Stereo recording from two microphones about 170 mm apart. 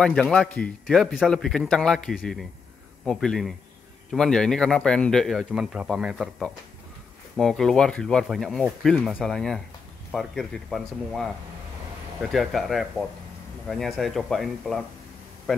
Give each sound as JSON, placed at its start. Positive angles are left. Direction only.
{"t": 0.0, "sound": "speech", "side_deg": 5}